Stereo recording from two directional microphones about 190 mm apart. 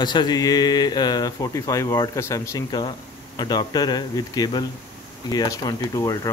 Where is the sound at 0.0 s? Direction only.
20° left (ahead or behind).